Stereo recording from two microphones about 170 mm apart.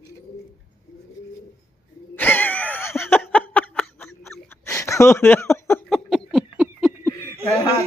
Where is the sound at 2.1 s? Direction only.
10° left (ahead or behind).